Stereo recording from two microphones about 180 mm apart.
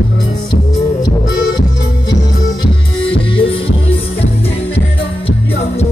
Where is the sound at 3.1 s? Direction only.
30° left (ahead or behind).